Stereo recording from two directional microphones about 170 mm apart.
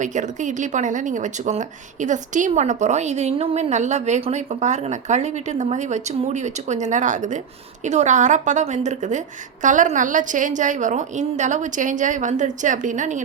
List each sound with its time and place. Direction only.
0.0 s speech: 45° right (ahead or behind)